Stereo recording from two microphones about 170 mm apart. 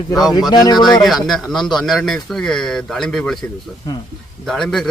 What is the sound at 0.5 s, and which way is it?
Speech, 25° left (ahead or behind).